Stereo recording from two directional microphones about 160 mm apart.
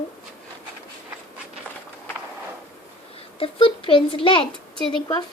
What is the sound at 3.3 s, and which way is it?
A child's voice, 35° left (ahead or behind).